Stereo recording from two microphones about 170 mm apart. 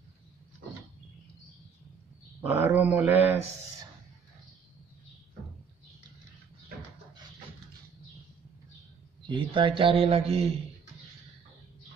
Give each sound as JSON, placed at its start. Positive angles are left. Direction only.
{"t": 2.4, "sound": "speech", "side_deg": -10}
{"t": 9.2, "sound": "a man's voice", "side_deg": -30}